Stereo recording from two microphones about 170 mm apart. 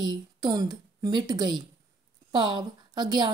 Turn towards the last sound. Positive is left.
turn(degrees=-25)  # may be behind; listen again after turning